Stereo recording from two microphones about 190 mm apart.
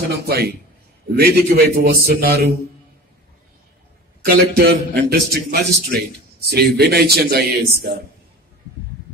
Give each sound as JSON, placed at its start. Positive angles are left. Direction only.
{"t": 0.3, "sound": "a man's voice", "side_deg": -55}
{"t": 4.3, "sound": "a man's voice", "side_deg": -55}